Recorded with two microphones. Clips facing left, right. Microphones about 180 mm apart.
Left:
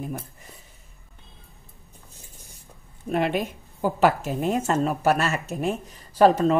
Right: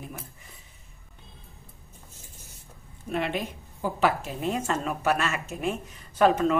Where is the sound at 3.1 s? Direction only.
50° left (ahead or behind).